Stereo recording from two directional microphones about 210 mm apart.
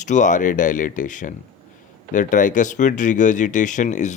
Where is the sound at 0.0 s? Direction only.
35° left (ahead or behind).